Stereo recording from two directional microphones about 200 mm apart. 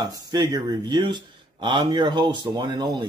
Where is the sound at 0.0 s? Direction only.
20° right (ahead or behind).